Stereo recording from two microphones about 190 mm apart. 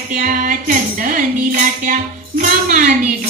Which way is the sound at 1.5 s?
45° right (ahead or behind).